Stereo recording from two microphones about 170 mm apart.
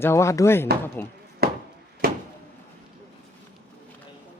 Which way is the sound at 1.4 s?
65° right (ahead or behind).